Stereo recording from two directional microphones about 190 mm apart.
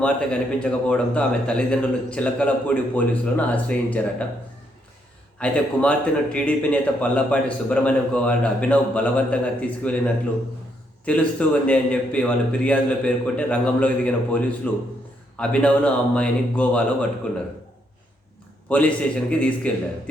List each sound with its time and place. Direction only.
0.0 s speech: 5° left (ahead or behind)
5.4 s speech: 5° left (ahead or behind)
11.0 s speech: 5° left (ahead or behind)
18.7 s speech: 5° left (ahead or behind)